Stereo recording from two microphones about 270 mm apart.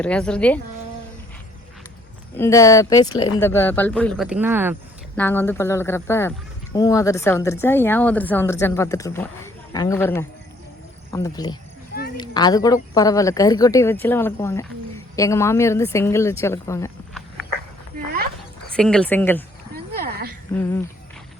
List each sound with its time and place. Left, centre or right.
0.0 s speech: centre
2.3 s speech: centre
5.1 s speech: centre
18.8 s speech: centre
19.7 s a sound: right